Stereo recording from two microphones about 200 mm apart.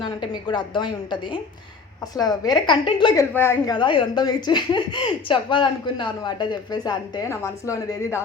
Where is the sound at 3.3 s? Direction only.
10° left (ahead or behind).